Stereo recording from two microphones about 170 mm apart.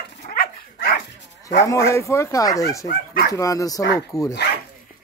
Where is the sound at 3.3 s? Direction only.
20° left (ahead or behind).